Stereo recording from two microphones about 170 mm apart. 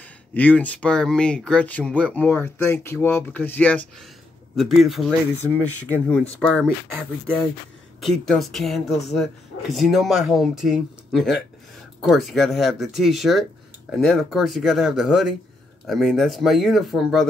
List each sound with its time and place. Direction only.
0.3 s speech: 10° left (ahead or behind)
4.6 s speech: centre (ahead or behind)
5.5 s speech: 10° left (ahead or behind)